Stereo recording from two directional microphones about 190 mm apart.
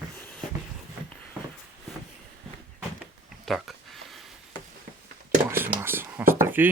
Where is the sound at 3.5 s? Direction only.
Centre (ahead or behind).